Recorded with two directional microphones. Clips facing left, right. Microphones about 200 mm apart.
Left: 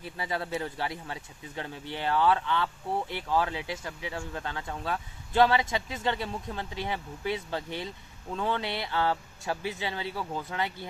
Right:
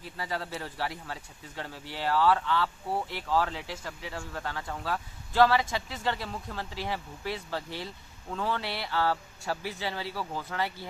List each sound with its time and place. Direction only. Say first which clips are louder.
0.2 s speech: left 3 dB; 20° left (ahead or behind)